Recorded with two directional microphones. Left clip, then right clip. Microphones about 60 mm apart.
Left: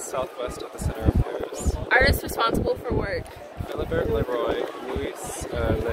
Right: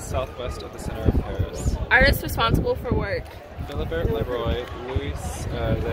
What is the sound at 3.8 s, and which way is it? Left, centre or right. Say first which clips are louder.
Speech: left 1 dB; left.